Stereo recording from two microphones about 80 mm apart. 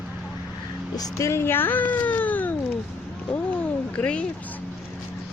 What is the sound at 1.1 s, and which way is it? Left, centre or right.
Speech, left.